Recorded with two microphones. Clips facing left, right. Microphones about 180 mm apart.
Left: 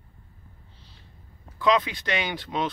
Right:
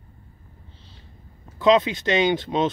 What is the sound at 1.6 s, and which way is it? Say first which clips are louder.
Speech: right 5 dB; 25° right (ahead or behind).